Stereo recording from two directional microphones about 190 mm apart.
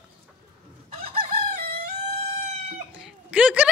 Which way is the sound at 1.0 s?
30° right (ahead or behind).